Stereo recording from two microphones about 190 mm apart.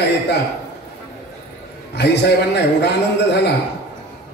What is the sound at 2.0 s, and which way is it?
Speech, 60° left (ahead or behind).